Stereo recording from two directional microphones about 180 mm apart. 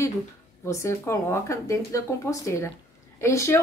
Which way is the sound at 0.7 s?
15° left (ahead or behind).